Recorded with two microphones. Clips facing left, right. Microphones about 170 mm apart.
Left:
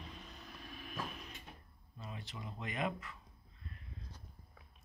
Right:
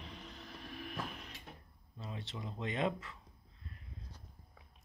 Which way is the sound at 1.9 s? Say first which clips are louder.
Right 3 dB; 25° right (ahead or behind).